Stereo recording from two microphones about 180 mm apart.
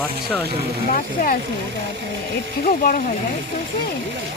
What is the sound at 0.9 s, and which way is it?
Speech, 50° left (ahead or behind).